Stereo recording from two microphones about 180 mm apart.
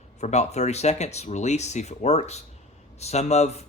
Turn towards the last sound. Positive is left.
turn(degrees=35)  # may be behind; listen again after turning